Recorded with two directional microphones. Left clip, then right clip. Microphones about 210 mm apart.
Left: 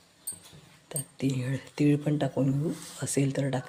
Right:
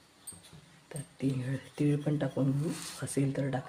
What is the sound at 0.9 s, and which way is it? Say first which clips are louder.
Speech: left 3 dB; 15° left (ahead or behind).